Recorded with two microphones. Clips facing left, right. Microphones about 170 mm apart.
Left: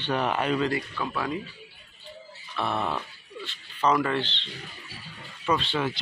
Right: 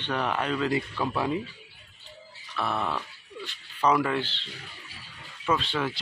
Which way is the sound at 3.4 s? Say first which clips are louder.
Even; 10° right (ahead or behind).